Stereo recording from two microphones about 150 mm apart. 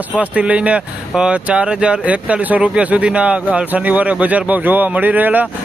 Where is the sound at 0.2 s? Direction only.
10° right (ahead or behind).